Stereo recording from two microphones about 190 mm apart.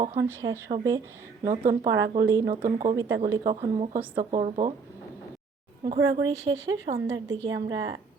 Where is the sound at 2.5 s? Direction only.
45° right (ahead or behind).